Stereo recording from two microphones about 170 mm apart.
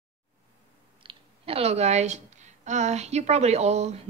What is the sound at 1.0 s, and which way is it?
Speech, 35° right (ahead or behind).